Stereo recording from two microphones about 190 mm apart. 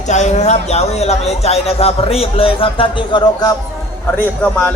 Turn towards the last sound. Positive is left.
turn(degrees=5)  # may be behind; listen again after turning